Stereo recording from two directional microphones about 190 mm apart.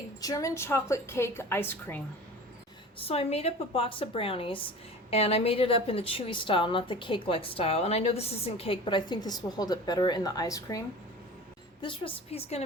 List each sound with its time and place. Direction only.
0.2 s a woman's voice: 20° left (ahead or behind)
3.0 s a woman's voice: 30° left (ahead or behind)
11.8 s a woman's voice: 30° left (ahead or behind)